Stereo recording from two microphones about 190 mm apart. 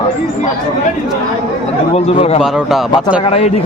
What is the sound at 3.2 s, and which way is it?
Speech, 30° left (ahead or behind).